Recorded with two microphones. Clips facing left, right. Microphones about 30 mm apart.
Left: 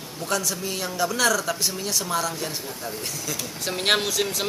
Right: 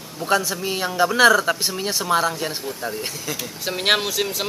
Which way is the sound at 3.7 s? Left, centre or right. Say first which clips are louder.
Right 2 dB; centre.